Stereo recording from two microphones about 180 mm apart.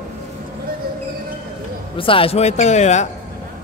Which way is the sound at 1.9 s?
30° left (ahead or behind).